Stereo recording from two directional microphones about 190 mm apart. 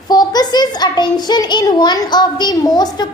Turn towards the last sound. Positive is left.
turn(degrees=20)  # may be behind; listen again after turning